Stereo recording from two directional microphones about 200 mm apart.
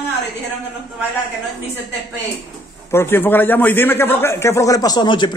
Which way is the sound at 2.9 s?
10° left (ahead or behind).